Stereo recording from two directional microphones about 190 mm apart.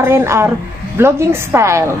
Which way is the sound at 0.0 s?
15° right (ahead or behind).